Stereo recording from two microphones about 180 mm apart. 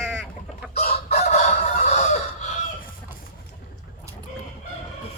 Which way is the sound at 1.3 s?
40° left (ahead or behind).